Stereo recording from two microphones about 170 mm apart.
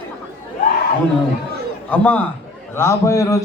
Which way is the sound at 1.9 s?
5° left (ahead or behind).